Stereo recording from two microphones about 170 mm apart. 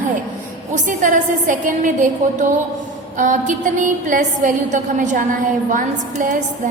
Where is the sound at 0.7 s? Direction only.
50° right (ahead or behind).